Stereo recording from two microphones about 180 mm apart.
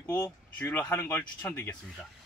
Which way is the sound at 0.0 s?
10° left (ahead or behind).